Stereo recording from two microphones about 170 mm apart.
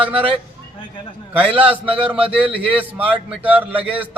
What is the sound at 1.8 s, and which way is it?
Speech, 30° right (ahead or behind).